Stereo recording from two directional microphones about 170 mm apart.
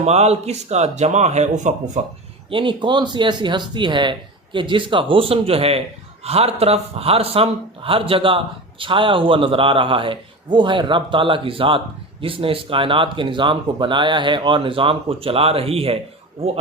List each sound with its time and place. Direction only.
0.0 s speech: 40° right (ahead or behind)
2.5 s speech: 30° right (ahead or behind)